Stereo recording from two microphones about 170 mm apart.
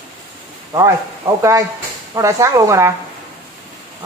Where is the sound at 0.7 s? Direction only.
20° right (ahead or behind).